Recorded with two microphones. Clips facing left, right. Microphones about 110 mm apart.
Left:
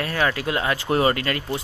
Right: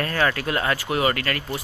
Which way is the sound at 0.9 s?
30° left (ahead or behind).